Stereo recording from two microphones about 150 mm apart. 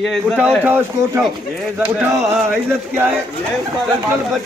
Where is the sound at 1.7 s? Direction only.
10° right (ahead or behind).